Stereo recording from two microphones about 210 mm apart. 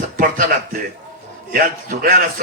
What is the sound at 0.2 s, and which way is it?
A man's voice, 45° right (ahead or behind).